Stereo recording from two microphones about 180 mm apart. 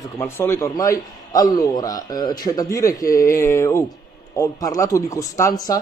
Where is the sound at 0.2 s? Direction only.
15° left (ahead or behind).